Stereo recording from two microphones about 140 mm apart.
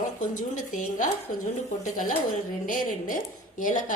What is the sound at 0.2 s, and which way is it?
A woman's voice, 70° left (ahead or behind).